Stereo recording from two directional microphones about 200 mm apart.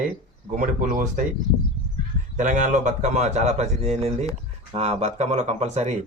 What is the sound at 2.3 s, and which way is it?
A man's voice, 40° right (ahead or behind).